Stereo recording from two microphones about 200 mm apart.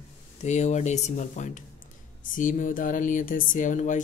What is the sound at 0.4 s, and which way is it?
Speech, 35° left (ahead or behind).